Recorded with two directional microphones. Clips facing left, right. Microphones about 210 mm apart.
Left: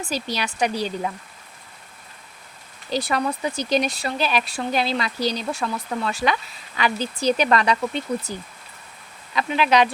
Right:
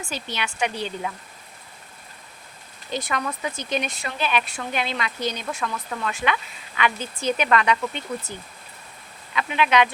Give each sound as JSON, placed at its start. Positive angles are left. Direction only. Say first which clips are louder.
{"t": 0.0, "sound": "speech", "louder": "left 4 dB", "side_deg": 35}
{"t": 2.9, "sound": "speech", "louder": "left 4 dB", "side_deg": 35}